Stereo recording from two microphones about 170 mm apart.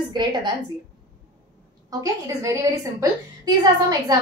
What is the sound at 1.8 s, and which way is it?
A woman's voice, 20° right (ahead or behind).